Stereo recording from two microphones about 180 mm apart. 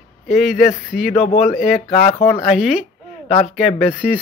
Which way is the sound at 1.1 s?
30° left (ahead or behind).